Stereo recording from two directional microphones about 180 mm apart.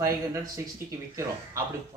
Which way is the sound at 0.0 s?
15° right (ahead or behind).